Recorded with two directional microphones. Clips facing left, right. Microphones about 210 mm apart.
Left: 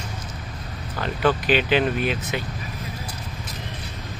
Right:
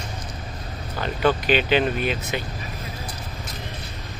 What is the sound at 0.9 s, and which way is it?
Speech, centre (ahead or behind).